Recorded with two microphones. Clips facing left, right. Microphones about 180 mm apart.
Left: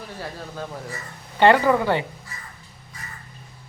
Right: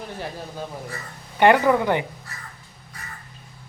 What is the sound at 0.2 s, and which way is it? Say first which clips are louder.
Speech: left 1 dB; 20° right (ahead or behind).